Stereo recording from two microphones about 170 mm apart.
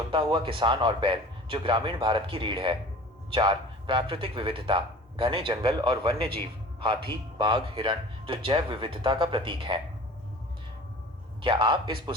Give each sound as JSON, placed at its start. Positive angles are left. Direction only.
{"t": 0.1, "sound": "speech", "side_deg": -30}
{"t": 11.4, "sound": "speech", "side_deg": -30}